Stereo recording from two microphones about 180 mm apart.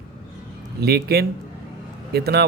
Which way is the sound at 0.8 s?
60° right (ahead or behind).